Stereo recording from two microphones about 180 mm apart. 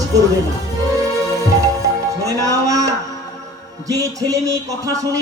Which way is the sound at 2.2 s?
20° right (ahead or behind).